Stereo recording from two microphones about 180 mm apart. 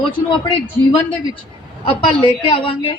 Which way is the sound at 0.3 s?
30° left (ahead or behind).